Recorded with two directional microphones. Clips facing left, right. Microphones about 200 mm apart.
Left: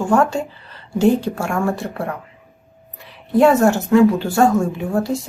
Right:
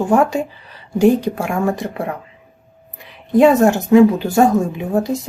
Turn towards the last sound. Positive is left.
turn(degrees=-20)  # may be behind; listen again after turning